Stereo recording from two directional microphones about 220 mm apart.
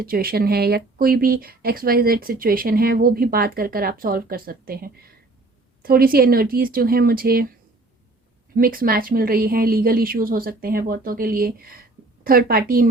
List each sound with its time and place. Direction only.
0.0 s speech: 40° right (ahead or behind)
8.5 s a woman's voice: 40° right (ahead or behind)